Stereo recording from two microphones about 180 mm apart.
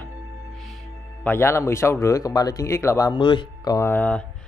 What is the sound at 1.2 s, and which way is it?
Speech, 10° left (ahead or behind).